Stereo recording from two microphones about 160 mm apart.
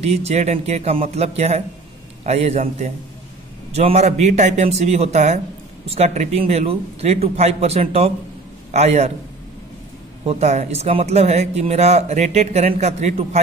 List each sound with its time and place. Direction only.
0.0 s a man's voice: 40° right (ahead or behind)
10.2 s speech: 45° right (ahead or behind)